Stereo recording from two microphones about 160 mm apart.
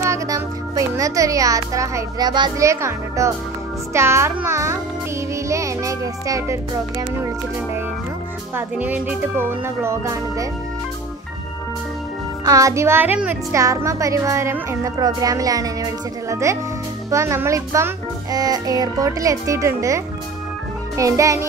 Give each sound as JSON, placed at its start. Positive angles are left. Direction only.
{"t": 0.0, "sound": "a child's voice", "side_deg": -20}
{"t": 3.9, "sound": "music", "side_deg": -15}
{"t": 8.5, "sound": "music", "side_deg": -10}
{"t": 12.4, "sound": "speech", "side_deg": -20}